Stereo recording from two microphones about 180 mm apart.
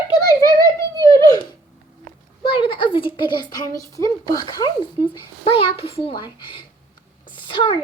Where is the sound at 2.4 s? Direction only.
30° left (ahead or behind).